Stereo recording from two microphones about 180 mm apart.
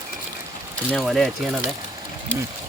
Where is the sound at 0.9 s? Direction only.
Centre (ahead or behind).